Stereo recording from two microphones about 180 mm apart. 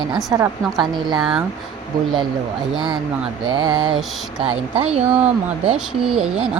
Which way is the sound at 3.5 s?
25° right (ahead or behind).